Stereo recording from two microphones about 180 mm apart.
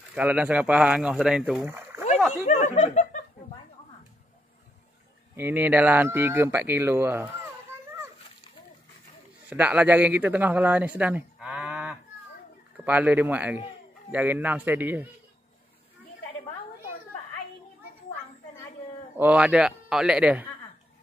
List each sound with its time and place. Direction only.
0.1 s speech: 10° right (ahead or behind)
2.7 s speech: 40° left (ahead or behind)
5.3 s speech: 10° right (ahead or behind)
9.5 s a man's voice: 10° right (ahead or behind)
19.1 s a man's voice: 10° right (ahead or behind)